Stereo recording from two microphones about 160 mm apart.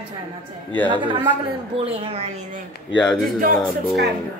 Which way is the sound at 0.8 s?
30° right (ahead or behind).